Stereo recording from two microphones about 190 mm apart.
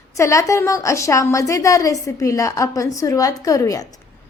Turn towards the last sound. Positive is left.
turn(degrees=20)  # may be behind; listen again after turning